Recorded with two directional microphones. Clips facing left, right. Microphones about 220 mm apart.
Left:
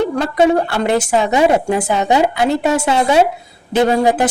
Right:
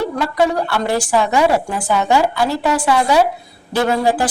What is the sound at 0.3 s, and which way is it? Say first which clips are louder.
Speech: left 4 dB; 25° left (ahead or behind).